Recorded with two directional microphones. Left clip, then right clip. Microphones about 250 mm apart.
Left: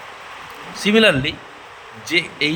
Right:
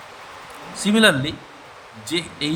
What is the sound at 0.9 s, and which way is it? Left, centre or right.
A man's voice, centre.